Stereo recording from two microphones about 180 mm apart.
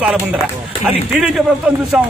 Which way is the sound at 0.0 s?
5° right (ahead or behind).